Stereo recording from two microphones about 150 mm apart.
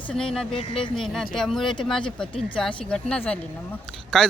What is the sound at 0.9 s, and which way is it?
A man's voice, 5° left (ahead or behind).